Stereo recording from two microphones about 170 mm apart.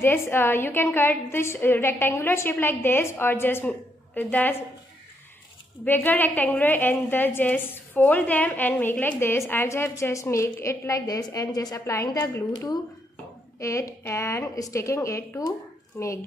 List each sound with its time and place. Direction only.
0.0 s a woman's voice: 15° left (ahead or behind)
5.9 s a woman's voice: 10° left (ahead or behind)